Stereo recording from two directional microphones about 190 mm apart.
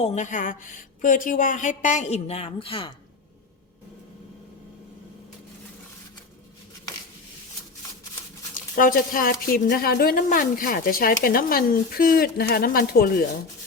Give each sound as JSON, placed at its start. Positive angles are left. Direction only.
{"t": 0.0, "sound": "speech", "side_deg": 35}
{"t": 8.5, "sound": "a woman's voice", "side_deg": 45}